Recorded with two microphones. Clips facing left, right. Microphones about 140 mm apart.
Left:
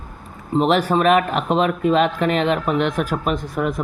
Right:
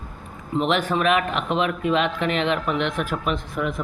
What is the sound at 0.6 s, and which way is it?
Speech, 40° left (ahead or behind).